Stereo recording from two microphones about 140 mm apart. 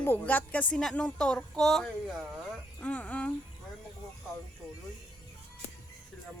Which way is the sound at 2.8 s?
10° left (ahead or behind).